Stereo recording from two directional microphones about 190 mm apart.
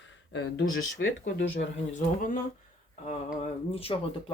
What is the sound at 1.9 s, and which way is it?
Speech, 45° left (ahead or behind).